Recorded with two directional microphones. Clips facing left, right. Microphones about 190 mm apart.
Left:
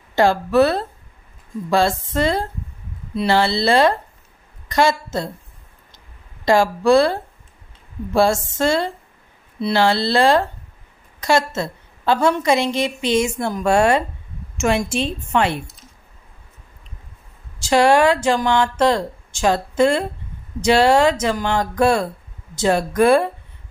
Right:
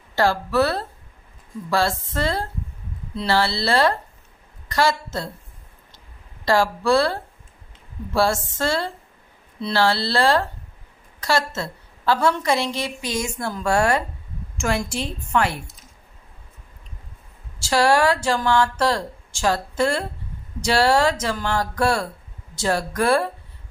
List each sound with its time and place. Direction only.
0.1 s a woman's voice: 20° left (ahead or behind)
6.4 s a woman's voice: 15° left (ahead or behind)
17.6 s a woman's voice: 20° left (ahead or behind)